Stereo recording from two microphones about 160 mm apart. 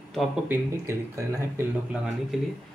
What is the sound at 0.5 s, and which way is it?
Speech, 15° right (ahead or behind).